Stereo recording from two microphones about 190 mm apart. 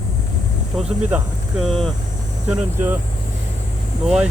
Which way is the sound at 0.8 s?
5° right (ahead or behind).